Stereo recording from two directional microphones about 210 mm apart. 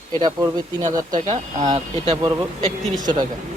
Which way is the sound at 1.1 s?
35° right (ahead or behind).